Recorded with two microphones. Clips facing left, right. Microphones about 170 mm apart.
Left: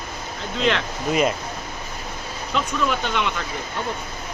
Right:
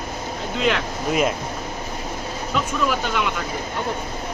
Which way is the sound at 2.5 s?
5° right (ahead or behind).